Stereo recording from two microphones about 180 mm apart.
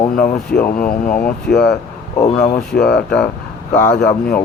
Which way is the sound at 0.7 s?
50° left (ahead or behind).